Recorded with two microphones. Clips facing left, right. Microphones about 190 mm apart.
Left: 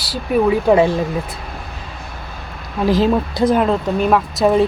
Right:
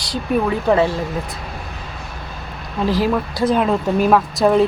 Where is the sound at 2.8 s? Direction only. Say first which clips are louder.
Left 3 dB; 20° left (ahead or behind).